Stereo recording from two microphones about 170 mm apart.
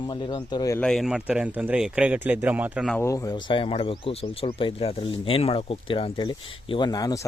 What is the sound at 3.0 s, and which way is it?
Speech, 20° left (ahead or behind).